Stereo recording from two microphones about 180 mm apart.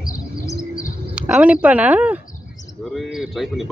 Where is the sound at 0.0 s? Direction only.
50° left (ahead or behind).